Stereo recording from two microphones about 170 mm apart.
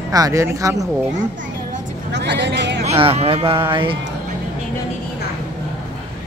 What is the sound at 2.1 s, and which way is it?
Speech, 90° right.